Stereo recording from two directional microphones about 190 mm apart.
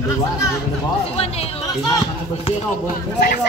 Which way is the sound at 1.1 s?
30° left (ahead or behind).